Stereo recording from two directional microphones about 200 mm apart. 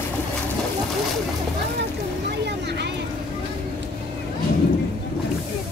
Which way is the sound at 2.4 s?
55° right (ahead or behind).